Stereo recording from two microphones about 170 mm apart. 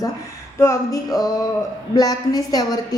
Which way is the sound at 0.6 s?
20° left (ahead or behind).